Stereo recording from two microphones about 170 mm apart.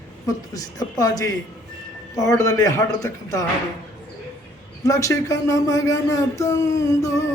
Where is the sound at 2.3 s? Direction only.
20° left (ahead or behind).